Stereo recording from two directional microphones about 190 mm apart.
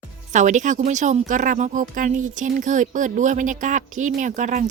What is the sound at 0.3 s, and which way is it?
A woman's voice, 40° right (ahead or behind).